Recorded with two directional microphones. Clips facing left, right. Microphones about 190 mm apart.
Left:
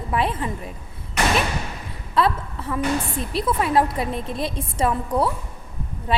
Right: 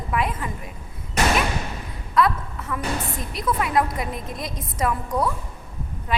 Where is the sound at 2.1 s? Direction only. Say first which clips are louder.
Even; 30° left (ahead or behind).